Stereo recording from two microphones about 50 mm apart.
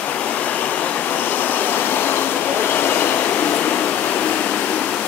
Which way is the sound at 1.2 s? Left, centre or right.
Left.